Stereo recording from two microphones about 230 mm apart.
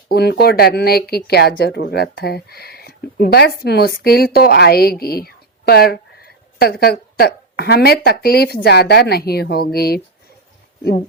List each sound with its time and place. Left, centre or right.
0.1 s speech: left